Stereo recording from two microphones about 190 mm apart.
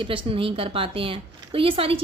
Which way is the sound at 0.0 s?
25° right (ahead or behind).